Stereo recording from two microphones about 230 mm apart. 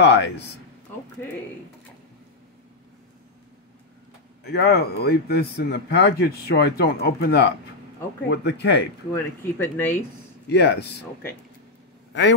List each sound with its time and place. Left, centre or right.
0.0 s speech: left
4.5 s speech: left
9.1 s speech: centre
10.5 s speech: left
12.1 s a man's voice: left